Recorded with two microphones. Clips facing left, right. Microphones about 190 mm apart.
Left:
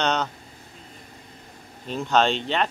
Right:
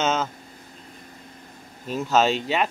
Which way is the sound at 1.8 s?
5° right (ahead or behind).